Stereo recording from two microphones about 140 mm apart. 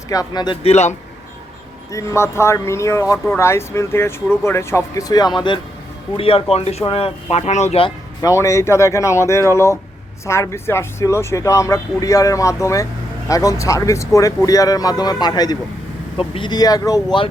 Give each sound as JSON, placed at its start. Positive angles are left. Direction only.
{"t": 0.1, "sound": "speech", "side_deg": 30}
{"t": 0.6, "sound": "speech", "side_deg": 50}
{"t": 1.9, "sound": "speech", "side_deg": 20}
{"t": 8.2, "sound": "speech", "side_deg": 20}